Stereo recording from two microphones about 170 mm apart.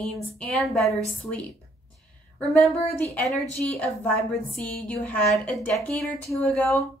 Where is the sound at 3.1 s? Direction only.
5° left (ahead or behind).